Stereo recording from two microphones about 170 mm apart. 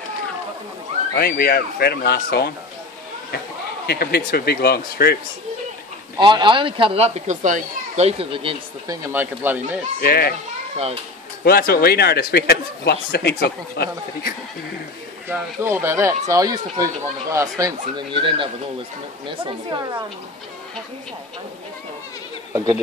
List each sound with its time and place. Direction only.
1.1 s speech: 60° left (ahead or behind)
3.8 s speech: 70° left (ahead or behind)
6.1 s speech: 25° right (ahead or behind)
9.0 s speech: 10° right (ahead or behind)
9.9 s speech: 60° left (ahead or behind)
11.4 s speech: 60° left (ahead or behind)
15.2 s speech: 10° right (ahead or behind)